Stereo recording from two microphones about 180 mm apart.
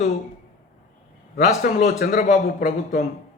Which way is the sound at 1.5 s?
40° left (ahead or behind).